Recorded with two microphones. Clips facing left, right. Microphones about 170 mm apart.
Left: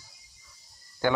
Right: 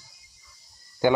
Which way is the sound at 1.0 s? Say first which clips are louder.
Right 5 dB; 15° right (ahead or behind).